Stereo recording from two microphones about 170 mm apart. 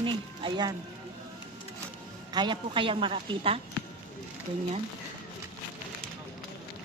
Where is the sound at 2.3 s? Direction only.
30° right (ahead or behind).